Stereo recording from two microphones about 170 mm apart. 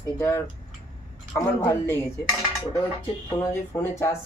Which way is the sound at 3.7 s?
15° left (ahead or behind).